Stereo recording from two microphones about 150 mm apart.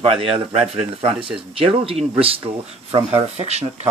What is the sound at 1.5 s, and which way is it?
Speech, 40° right (ahead or behind).